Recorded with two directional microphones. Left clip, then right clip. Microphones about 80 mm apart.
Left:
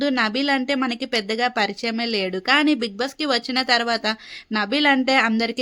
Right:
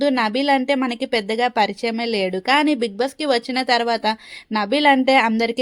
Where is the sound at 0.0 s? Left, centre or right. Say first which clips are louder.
Right 2 dB; right.